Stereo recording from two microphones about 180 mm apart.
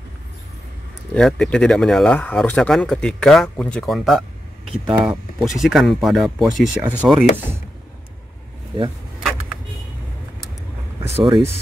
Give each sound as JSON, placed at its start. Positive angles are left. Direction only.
{"t": 1.1, "sound": "speech", "side_deg": 0}
{"t": 11.1, "sound": "speech", "side_deg": -30}